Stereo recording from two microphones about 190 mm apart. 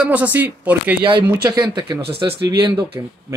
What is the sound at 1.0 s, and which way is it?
Speech, 20° right (ahead or behind).